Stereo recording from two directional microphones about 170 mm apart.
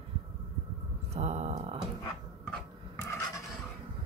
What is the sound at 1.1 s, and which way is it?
Speech, 40° right (ahead or behind).